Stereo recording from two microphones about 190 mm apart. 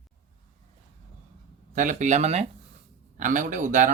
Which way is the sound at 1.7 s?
40° right (ahead or behind).